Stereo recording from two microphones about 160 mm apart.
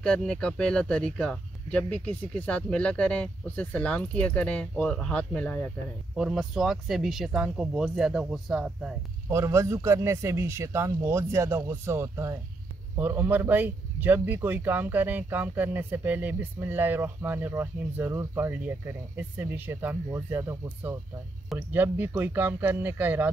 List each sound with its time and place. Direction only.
0.0 s speech: 5° left (ahead or behind)
6.1 s speech: 5° right (ahead or behind)
9.3 s speech: 15° right (ahead or behind)